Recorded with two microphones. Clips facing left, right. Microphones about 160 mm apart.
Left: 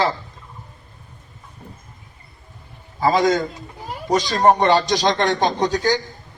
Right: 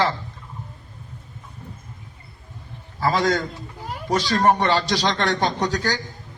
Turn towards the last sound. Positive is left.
turn(degrees=15)  # may be behind; listen again after turning